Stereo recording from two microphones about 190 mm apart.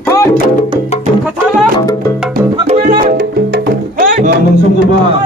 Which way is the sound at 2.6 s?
35° right (ahead or behind).